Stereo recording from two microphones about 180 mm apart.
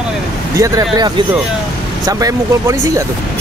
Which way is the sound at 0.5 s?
20° right (ahead or behind).